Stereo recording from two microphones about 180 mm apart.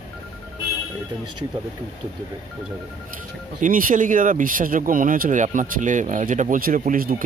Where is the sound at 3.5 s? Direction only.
45° right (ahead or behind).